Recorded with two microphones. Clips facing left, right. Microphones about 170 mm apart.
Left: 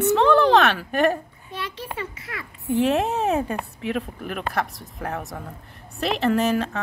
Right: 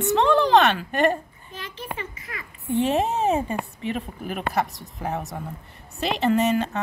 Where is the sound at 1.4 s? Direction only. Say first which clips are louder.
Left 3 dB; 75° left (ahead or behind).